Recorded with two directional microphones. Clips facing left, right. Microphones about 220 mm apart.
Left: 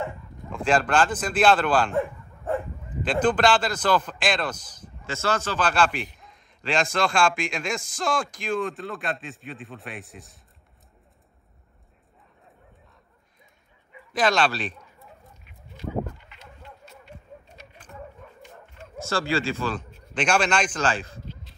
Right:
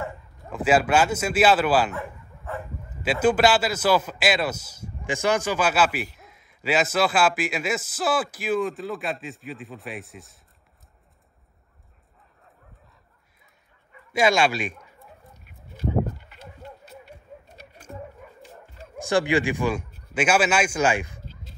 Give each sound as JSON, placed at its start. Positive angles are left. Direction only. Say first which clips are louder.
{"t": 0.5, "sound": "a man's voice", "louder": "right 2 dB", "side_deg": -5}
{"t": 2.0, "sound": "dog", "louder": "left 8 dB", "side_deg": 50}
{"t": 3.0, "sound": "a man's voice", "louder": "right 2 dB", "side_deg": -5}
{"t": 14.1, "sound": "a man's voice", "louder": "right 2 dB", "side_deg": -10}
{"t": 18.2, "sound": "dog", "louder": "right 1 dB", "side_deg": -5}
{"t": 18.9, "sound": "a man's voice", "louder": "right 4 dB", "side_deg": -15}